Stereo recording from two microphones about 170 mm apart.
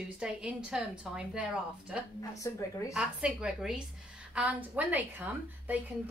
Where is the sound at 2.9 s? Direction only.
5° right (ahead or behind).